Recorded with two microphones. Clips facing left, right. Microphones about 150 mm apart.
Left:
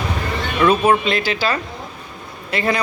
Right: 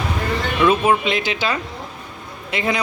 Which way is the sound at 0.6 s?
5° right (ahead or behind).